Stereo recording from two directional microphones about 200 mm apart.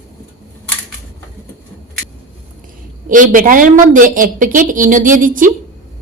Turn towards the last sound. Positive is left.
turn(degrees=-40)  # may be behind; listen again after turning